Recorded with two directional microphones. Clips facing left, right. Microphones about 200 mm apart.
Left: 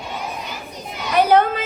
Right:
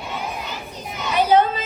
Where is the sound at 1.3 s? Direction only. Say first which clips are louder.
Right 1 dB; 60° left (ahead or behind).